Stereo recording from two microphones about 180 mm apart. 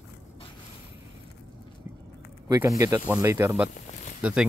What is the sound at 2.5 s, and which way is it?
Speech, 20° right (ahead or behind).